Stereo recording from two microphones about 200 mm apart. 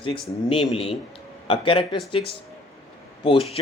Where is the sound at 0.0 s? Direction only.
25° left (ahead or behind).